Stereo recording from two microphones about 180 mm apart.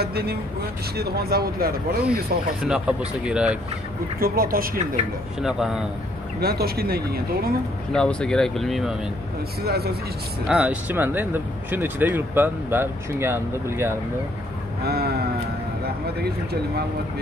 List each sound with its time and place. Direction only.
0.0 s speech: 60° right (ahead or behind)
2.6 s speech: 5° right (ahead or behind)
4.2 s speech: 55° right (ahead or behind)
5.4 s speech: 5° right (ahead or behind)
6.4 s speech: 60° right (ahead or behind)
7.9 s speech: 5° left (ahead or behind)
9.6 s speech: 60° right (ahead or behind)
10.5 s speech: 5° right (ahead or behind)
14.8 s vehicle: 60° right (ahead or behind)